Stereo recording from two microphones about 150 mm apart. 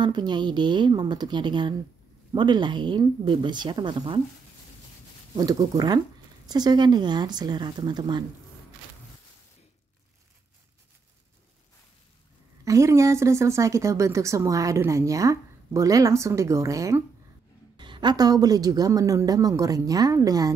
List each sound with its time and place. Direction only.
0.0 s speech: 30° right (ahead or behind)
5.3 s speech: 30° right (ahead or behind)
12.6 s speech: 20° right (ahead or behind)